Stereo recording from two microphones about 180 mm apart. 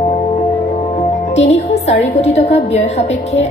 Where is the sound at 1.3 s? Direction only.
40° left (ahead or behind).